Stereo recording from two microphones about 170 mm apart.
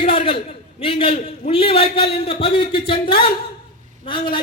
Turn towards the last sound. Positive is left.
turn(degrees=30)  # may be behind; listen again after turning